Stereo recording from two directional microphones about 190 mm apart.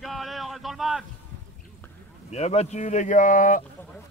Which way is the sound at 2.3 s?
35° left (ahead or behind).